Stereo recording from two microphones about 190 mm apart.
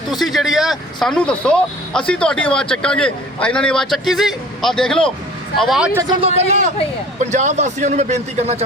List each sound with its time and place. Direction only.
0.1 s speech: centre (ahead or behind)
6.2 s a man's voice: 35° right (ahead or behind)